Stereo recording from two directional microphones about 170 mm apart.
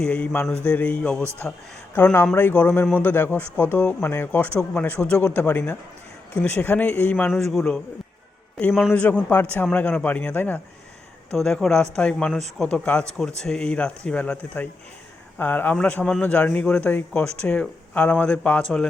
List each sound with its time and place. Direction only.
0.0 s speech: 10° left (ahead or behind)